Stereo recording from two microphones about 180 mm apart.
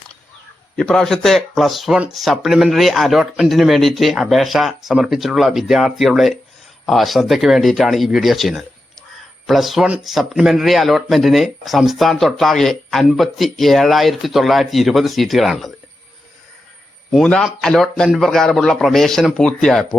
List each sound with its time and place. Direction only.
0.8 s a man's voice: 5° left (ahead or behind)
17.1 s a man's voice: centre (ahead or behind)